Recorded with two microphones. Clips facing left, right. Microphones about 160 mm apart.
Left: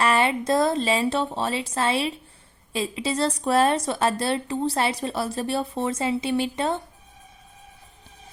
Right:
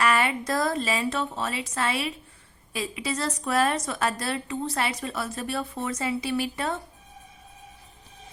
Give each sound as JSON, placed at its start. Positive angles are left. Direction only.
{"t": 0.0, "sound": "a woman's voice", "side_deg": 30}